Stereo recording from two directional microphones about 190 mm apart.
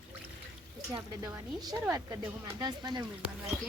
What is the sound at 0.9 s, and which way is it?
Speech, 20° right (ahead or behind).